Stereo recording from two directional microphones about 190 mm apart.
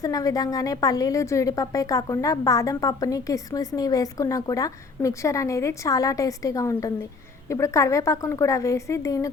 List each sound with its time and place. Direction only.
0.0 s a woman's voice: 20° left (ahead or behind)